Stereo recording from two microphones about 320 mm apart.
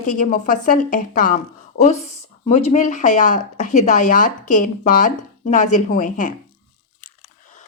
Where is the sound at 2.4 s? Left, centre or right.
Centre.